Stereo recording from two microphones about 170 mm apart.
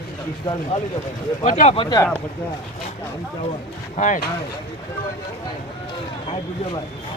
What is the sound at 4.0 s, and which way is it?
Speech, 50° left (ahead or behind).